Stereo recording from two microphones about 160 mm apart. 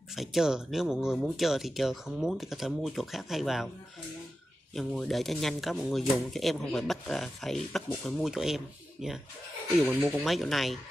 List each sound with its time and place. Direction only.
0.1 s speech: centre (ahead or behind)
4.7 s speech: centre (ahead or behind)